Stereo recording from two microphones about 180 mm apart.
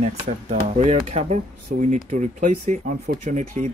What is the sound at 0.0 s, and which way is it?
Speech, 35° right (ahead or behind).